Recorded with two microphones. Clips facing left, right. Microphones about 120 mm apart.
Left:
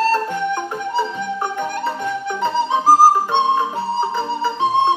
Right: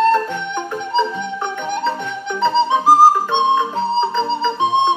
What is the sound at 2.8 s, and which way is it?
Music, 20° right (ahead or behind).